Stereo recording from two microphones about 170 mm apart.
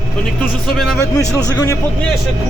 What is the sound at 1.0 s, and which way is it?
Speech, 20° left (ahead or behind).